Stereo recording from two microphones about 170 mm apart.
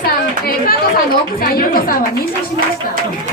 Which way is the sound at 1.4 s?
60° left (ahead or behind).